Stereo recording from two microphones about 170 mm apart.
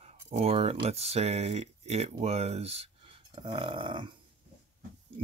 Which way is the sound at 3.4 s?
30° right (ahead or behind).